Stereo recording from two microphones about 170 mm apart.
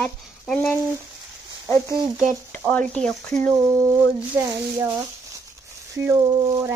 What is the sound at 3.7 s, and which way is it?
Speech, 15° right (ahead or behind).